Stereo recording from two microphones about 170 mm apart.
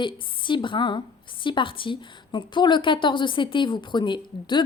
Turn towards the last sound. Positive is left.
turn(degrees=25)  # may be behind; listen again after turning